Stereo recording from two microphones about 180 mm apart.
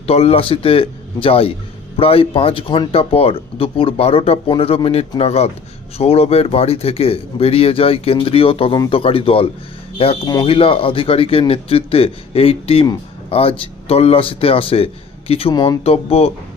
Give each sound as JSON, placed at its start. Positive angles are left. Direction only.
{"t": 0.1, "sound": "speech", "side_deg": 35}